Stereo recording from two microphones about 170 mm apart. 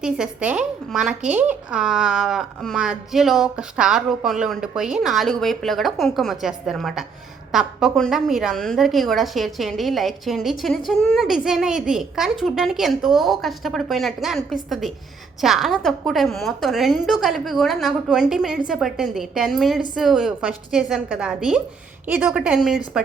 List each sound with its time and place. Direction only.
0.0 s a woman's voice: 5° right (ahead or behind)